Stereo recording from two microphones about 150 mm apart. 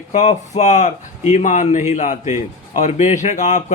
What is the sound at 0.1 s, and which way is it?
Speech, 50° left (ahead or behind).